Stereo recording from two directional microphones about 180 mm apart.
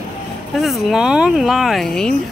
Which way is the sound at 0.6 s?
Centre (ahead or behind).